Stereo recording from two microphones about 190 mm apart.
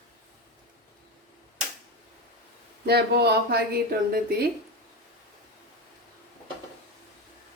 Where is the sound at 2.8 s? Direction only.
55° right (ahead or behind).